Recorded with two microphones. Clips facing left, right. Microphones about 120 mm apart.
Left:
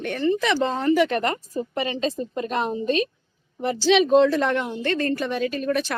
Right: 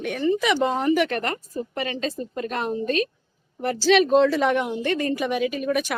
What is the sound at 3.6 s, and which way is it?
Speech, 5° right (ahead or behind).